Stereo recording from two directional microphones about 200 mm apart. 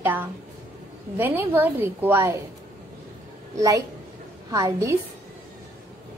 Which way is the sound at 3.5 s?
15° right (ahead or behind).